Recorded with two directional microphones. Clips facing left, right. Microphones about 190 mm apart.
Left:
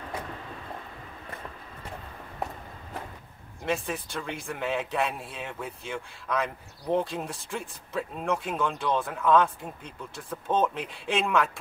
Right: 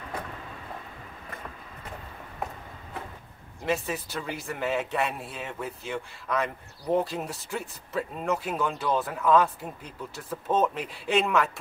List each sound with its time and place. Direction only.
3.6 s speech: centre (ahead or behind)